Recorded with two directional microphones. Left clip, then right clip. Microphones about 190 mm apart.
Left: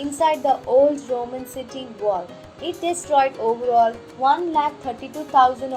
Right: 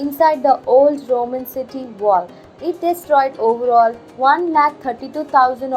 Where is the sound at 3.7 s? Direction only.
15° right (ahead or behind).